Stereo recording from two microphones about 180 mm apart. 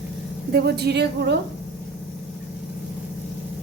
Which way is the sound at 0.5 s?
65° right (ahead or behind).